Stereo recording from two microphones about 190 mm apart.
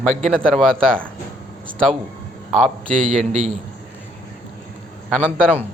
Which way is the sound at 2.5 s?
5° left (ahead or behind).